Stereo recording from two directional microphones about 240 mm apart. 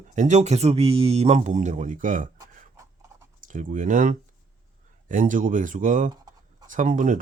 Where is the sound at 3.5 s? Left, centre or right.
Right.